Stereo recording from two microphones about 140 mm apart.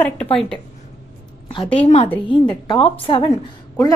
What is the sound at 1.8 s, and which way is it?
A woman's voice, 45° left (ahead or behind).